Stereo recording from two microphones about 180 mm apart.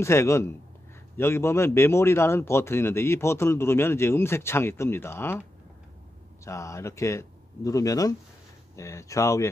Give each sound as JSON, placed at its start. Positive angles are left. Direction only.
{"t": 0.0, "sound": "a man's voice", "side_deg": 15}
{"t": 6.4, "sound": "a man's voice", "side_deg": 15}